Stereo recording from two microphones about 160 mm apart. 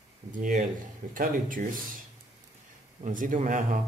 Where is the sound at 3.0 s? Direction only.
55° right (ahead or behind).